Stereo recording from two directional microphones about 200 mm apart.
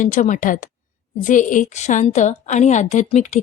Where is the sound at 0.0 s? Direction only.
40° left (ahead or behind).